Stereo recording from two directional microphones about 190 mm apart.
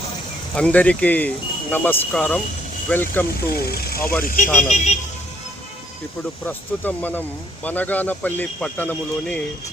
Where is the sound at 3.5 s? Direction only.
55° left (ahead or behind).